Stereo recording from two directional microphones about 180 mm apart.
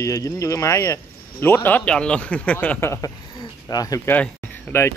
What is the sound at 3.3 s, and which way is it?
Cricket, 25° left (ahead or behind).